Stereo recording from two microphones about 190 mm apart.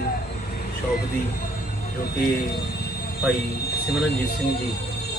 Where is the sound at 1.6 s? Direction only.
50° left (ahead or behind).